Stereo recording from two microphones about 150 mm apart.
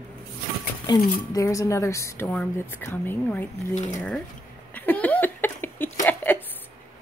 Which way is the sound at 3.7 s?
55° left (ahead or behind).